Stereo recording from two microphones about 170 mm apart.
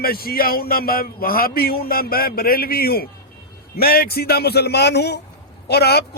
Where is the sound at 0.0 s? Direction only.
60° left (ahead or behind).